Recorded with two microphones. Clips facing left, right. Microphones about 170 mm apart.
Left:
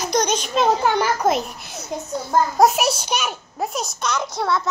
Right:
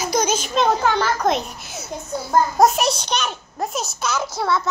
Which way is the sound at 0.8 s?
10° left (ahead or behind).